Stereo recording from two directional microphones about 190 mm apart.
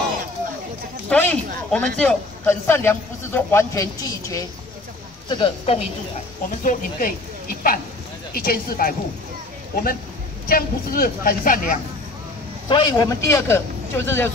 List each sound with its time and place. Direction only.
1.0 s a man's voice: 10° left (ahead or behind); by 5.8 s 25° left (ahead or behind)
6.6 s speech: 45° left (ahead or behind)
10.5 s speech: 50° left (ahead or behind)
12.6 s a man's voice: 25° left (ahead or behind)